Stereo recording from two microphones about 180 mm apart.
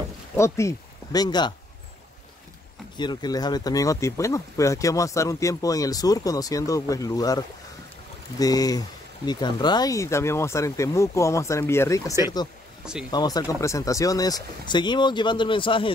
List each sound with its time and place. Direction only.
0.4 s speech: 15° left (ahead or behind)
3.0 s speech: 25° left (ahead or behind)